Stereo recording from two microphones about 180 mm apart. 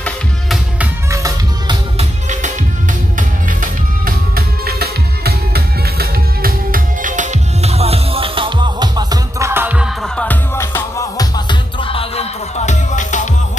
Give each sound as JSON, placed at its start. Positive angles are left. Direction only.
{"t": 0.7, "sound": "music", "side_deg": -20}
{"t": 2.0, "sound": "music", "side_deg": -40}
{"t": 10.0, "sound": "music", "side_deg": 5}